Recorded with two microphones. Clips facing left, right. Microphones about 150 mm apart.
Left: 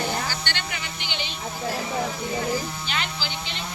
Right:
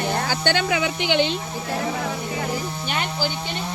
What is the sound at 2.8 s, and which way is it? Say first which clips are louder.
Music: right 5 dB; 50° right (ahead or behind).